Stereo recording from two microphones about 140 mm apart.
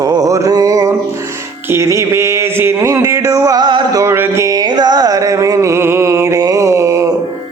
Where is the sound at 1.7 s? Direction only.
20° right (ahead or behind).